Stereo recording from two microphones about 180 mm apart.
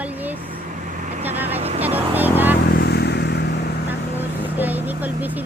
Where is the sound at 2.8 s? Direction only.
65° left (ahead or behind).